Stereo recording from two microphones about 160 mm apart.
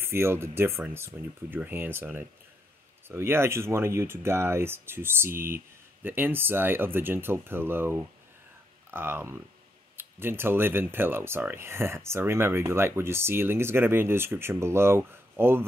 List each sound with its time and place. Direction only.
0.0 s speech: 15° right (ahead or behind)